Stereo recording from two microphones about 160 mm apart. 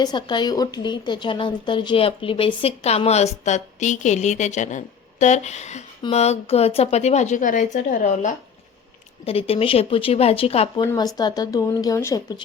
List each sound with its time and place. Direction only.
0.0 s a woman's voice: 25° left (ahead or behind); by 8.3 s 50° left (ahead or behind)
9.2 s speech: 35° left (ahead or behind)
10.9 s speech: 25° left (ahead or behind)